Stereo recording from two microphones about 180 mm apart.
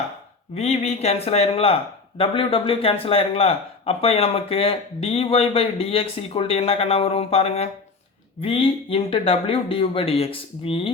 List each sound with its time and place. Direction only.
0.5 s speech: 35° left (ahead or behind)